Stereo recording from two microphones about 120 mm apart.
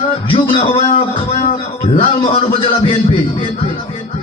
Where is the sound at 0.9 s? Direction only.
45° left (ahead or behind).